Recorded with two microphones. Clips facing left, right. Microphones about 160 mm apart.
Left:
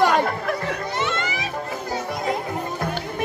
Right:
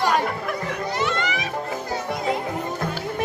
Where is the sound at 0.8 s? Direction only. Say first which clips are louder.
Right 1 dB; 25° left (ahead or behind).